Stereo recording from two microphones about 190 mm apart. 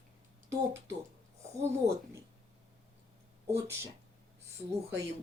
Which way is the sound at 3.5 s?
15° right (ahead or behind).